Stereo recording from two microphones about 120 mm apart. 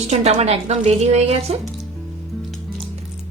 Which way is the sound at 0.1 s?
65° right (ahead or behind).